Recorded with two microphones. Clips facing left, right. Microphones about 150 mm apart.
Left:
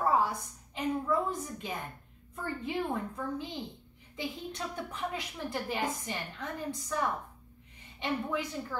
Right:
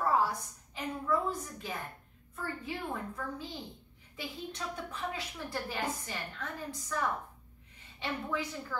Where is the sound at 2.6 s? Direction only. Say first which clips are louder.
Left 8 dB; 20° left (ahead or behind).